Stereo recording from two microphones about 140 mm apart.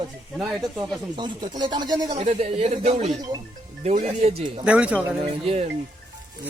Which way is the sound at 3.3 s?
30° right (ahead or behind).